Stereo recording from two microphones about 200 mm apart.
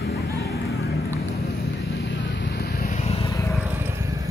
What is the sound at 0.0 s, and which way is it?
Vehicle, 50° left (ahead or behind).